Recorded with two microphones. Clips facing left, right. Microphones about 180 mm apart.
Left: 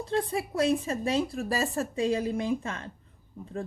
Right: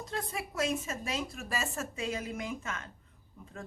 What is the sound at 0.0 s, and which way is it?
A woman's voice, 30° left (ahead or behind).